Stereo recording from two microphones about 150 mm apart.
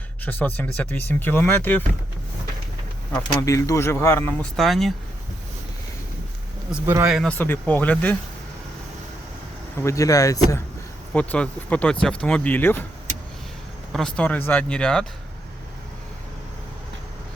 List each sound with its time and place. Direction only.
0.3 s speech: 10° left (ahead or behind)
3.1 s speech: 5° left (ahead or behind)
3.4 s speech: 20° left (ahead or behind)
4.5 s speech: centre (ahead or behind)
6.8 s speech: 15° right (ahead or behind)
7.3 s speech: 15° left (ahead or behind)
9.7 s speech: 20° left (ahead or behind)
11.1 s speech: 10° left (ahead or behind)
13.9 s speech: 5° left (ahead or behind)